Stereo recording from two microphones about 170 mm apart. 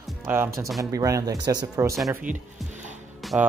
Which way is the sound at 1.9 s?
Centre (ahead or behind).